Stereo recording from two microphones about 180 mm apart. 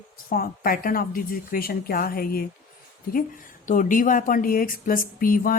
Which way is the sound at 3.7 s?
45° left (ahead or behind).